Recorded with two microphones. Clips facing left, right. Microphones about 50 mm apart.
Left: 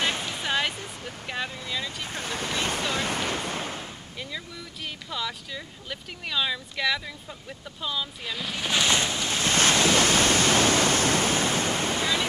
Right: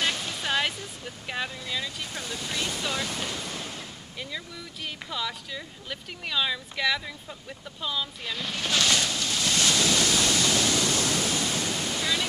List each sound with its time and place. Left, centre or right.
0.0 s music: left
0.4 s music: centre
1.2 s speech: centre
2.0 s waves: left
5.1 s speech: centre
8.6 s waves: centre; by 12.1 s left